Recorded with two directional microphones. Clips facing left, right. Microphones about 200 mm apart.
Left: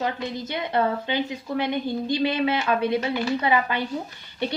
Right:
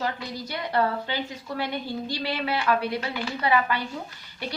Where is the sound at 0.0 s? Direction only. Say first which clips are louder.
Left 3 dB; 20° left (ahead or behind).